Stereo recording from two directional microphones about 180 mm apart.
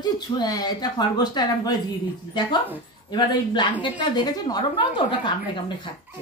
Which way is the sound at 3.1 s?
25° left (ahead or behind).